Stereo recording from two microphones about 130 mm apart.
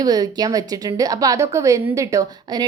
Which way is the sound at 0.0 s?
30° right (ahead or behind).